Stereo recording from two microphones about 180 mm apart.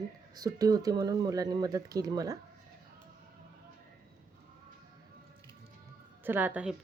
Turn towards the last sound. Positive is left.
turn(degrees=-5)  # may be behind; listen again after turning